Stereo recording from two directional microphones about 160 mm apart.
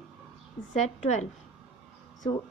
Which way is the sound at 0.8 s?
45° left (ahead or behind).